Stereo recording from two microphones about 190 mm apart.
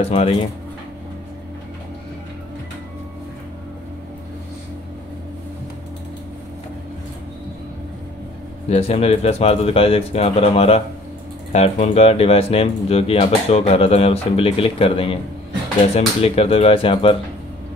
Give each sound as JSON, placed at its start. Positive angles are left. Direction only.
{"t": 0.0, "sound": "speech", "side_deg": 35}
{"t": 8.6, "sound": "speech", "side_deg": 35}
{"t": 16.2, "sound": "speech", "side_deg": 30}